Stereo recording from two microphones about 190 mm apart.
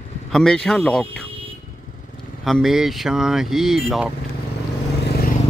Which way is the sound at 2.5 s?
Centre (ahead or behind).